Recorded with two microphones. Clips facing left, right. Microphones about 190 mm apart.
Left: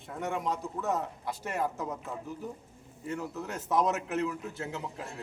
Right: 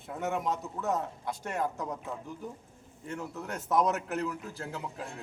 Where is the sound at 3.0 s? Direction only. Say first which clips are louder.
Left 2 dB; centre (ahead or behind).